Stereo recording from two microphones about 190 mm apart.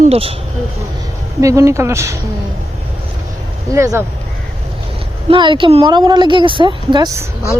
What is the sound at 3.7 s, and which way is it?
Speech, 15° right (ahead or behind).